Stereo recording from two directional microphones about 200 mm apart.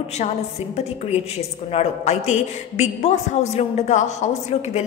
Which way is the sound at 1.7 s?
35° left (ahead or behind).